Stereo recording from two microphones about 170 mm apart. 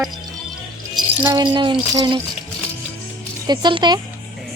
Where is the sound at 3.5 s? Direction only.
25° right (ahead or behind).